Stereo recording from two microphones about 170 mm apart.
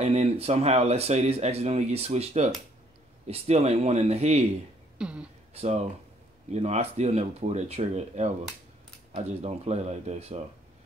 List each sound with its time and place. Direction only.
0.0 s speech: 40° right (ahead or behind)
4.9 s a sound: 5° right (ahead or behind)
5.5 s speech: 40° right (ahead or behind)